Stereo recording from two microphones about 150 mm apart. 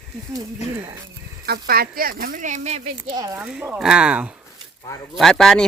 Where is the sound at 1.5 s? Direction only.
85° right; by 2.8 s 50° right (ahead or behind).